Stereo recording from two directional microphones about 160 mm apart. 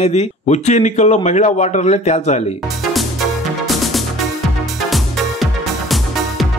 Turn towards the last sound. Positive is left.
turn(degrees=0)  # may be behind; listen again after turning